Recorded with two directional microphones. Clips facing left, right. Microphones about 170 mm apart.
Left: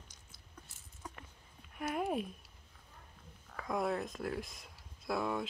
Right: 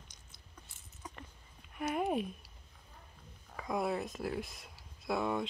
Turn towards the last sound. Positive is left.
turn(degrees=0)  # may be behind; listen again after turning